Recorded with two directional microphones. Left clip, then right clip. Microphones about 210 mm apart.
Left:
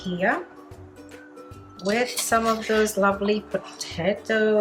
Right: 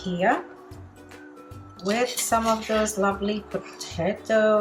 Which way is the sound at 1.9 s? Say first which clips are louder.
Left 1 dB; 5° left (ahead or behind).